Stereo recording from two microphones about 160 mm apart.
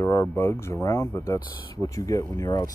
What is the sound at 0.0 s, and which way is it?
Speech, 20° left (ahead or behind).